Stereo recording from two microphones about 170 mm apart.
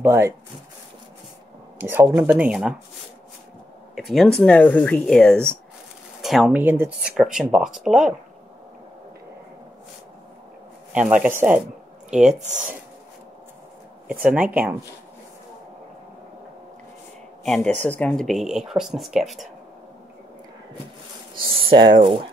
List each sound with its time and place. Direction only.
0.0 s speech: 15° right (ahead or behind)
1.8 s speech: 10° right (ahead or behind)
3.9 s speech: centre (ahead or behind)
10.9 s speech: 5° right (ahead or behind)
14.2 s speech: 10° right (ahead or behind)
17.8 s speech: 10° left (ahead or behind)
21.4 s speech: 30° right (ahead or behind)